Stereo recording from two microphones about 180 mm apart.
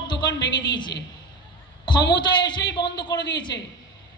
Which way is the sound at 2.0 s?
70° left (ahead or behind).